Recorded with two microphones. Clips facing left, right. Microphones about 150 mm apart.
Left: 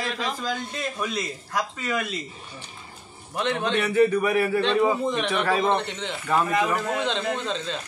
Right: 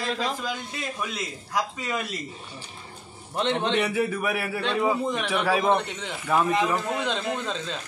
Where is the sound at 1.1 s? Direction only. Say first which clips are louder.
Left 1 dB; 15° right (ahead or behind).